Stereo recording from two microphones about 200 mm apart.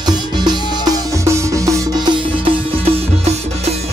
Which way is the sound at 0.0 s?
20° right (ahead or behind).